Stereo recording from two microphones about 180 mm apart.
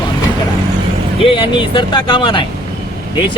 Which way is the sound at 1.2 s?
30° left (ahead or behind).